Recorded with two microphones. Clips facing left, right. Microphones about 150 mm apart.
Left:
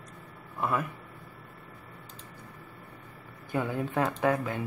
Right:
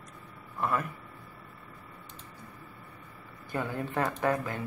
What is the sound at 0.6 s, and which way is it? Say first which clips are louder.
Speech: left 1 dB; 5° left (ahead or behind).